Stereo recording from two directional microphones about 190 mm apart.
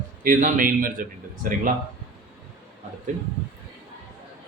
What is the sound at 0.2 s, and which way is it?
Speech, 45° right (ahead or behind).